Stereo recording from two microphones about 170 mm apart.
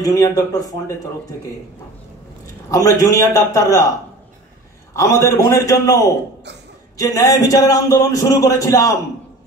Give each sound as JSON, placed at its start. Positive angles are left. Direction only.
{"t": 0.0, "sound": "speech", "side_deg": 20}
{"t": 2.7, "sound": "speech", "side_deg": 20}
{"t": 4.9, "sound": "a man's voice", "side_deg": 15}